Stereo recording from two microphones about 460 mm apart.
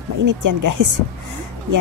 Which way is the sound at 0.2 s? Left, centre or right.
Right.